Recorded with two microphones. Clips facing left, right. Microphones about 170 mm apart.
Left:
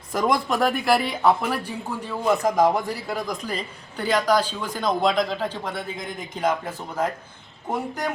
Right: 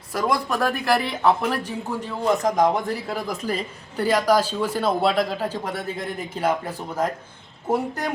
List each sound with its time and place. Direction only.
0.2 s a man's voice: 20° left (ahead or behind); by 8.1 s 10° right (ahead or behind)